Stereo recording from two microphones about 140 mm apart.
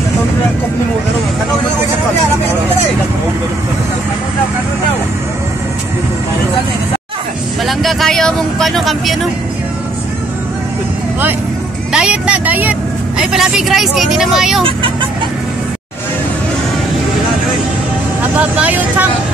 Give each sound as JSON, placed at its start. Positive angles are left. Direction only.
{"t": 7.6, "sound": "speech", "side_deg": 0}
{"t": 11.9, "sound": "speech", "side_deg": -5}
{"t": 14.6, "sound": "speech", "side_deg": -40}
{"t": 18.3, "sound": "speech", "side_deg": -10}